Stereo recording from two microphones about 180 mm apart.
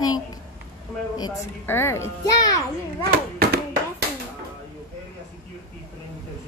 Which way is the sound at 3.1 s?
60° right (ahead or behind).